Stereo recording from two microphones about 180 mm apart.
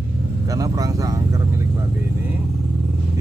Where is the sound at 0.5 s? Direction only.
20° right (ahead or behind).